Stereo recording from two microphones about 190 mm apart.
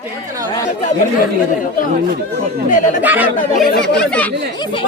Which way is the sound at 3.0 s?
10° right (ahead or behind).